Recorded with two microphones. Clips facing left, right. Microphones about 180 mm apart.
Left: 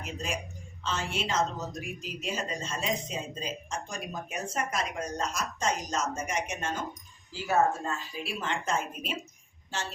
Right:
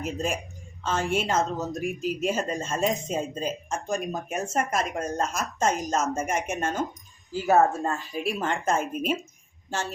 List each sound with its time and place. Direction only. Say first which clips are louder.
0.0 s a woman's voice: right 6 dB; 50° right (ahead or behind)